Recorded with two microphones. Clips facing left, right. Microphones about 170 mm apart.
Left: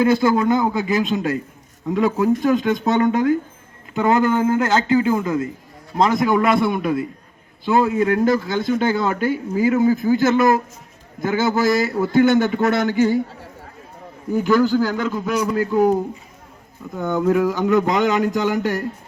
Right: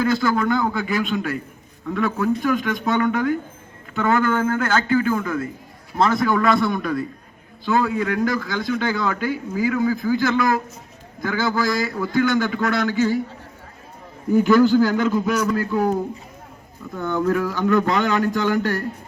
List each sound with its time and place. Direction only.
0.0 s a man's voice: 25° left (ahead or behind)
14.4 s speech: 15° left (ahead or behind)
14.8 s a man's voice: 10° right (ahead or behind)
15.3 s speech: 10° left (ahead or behind)